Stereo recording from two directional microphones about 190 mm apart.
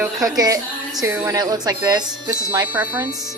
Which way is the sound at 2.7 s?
10° right (ahead or behind).